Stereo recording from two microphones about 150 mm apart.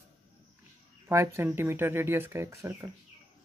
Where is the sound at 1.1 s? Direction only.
20° right (ahead or behind).